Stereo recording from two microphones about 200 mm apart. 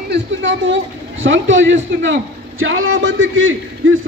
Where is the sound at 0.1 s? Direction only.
70° right (ahead or behind).